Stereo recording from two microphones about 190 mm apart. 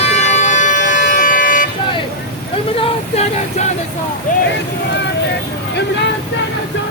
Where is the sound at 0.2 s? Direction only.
40° left (ahead or behind).